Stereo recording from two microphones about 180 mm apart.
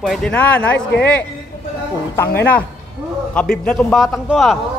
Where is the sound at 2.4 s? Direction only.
10° left (ahead or behind).